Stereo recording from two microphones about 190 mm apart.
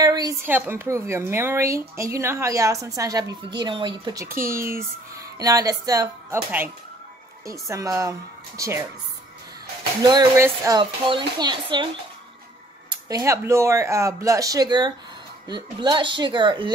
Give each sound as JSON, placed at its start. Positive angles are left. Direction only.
{"t": 0.0, "sound": "a child's voice", "side_deg": -20}
{"t": 10.0, "sound": "a child's voice", "side_deg": -20}
{"t": 10.8, "sound": "speech", "side_deg": -25}
{"t": 13.1, "sound": "a child's voice", "side_deg": -15}